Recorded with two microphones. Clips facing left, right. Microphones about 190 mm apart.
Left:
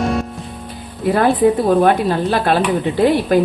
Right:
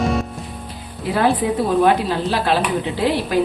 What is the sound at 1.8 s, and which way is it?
Speech, 50° left (ahead or behind).